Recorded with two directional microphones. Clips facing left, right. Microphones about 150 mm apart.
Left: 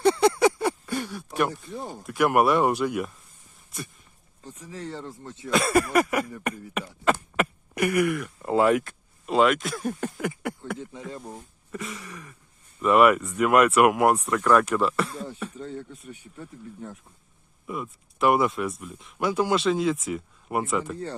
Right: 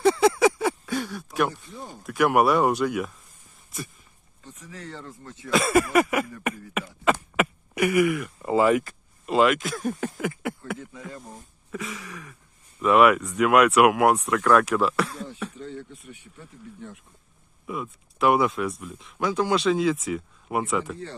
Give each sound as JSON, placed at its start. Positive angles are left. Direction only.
{"t": 0.0, "sound": "a sound", "side_deg": 0}
{"t": 1.6, "sound": "speech", "side_deg": 60}
{"t": 2.0, "sound": "speech", "side_deg": 0}
{"t": 4.7, "sound": "speech", "side_deg": 30}
{"t": 5.5, "sound": "speech", "side_deg": 0}
{"t": 6.4, "sound": "beatboxing", "side_deg": 0}
{"t": 11.7, "sound": "speech", "side_deg": 0}
{"t": 17.7, "sound": "speech", "side_deg": 0}